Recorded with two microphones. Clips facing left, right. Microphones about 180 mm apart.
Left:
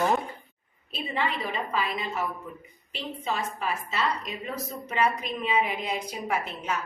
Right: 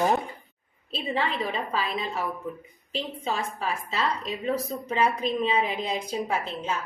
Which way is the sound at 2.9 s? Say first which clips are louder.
Right 2 dB; 30° right (ahead or behind).